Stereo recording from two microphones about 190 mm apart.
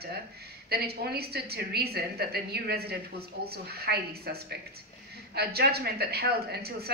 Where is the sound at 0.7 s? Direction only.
55° right (ahead or behind).